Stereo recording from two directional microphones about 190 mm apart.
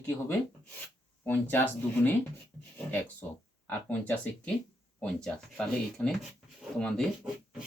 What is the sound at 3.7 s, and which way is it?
Speech, 10° left (ahead or behind).